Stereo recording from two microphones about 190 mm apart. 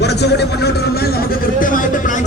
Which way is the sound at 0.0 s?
60° left (ahead or behind).